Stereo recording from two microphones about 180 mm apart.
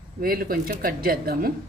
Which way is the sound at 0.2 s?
55° right (ahead or behind).